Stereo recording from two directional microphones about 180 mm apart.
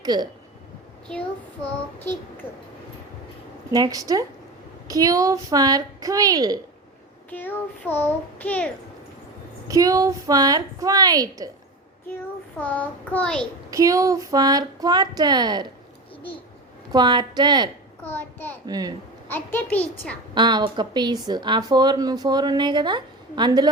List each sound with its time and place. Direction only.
0.0 s speech: 25° right (ahead or behind)
3.7 s speech: 20° right (ahead or behind)
7.3 s a child's voice: 10° left (ahead or behind)
9.6 s speech: 20° right (ahead or behind)
12.5 s a child's voice: 10° left (ahead or behind)
13.7 s speech: 20° right (ahead or behind)
16.9 s speech: 25° right (ahead or behind)
18.0 s a child's voice: 10° left (ahead or behind)
18.6 s speech: 20° right (ahead or behind)
19.3 s a child's voice: 10° left (ahead or behind)
20.3 s speech: 25° right (ahead or behind)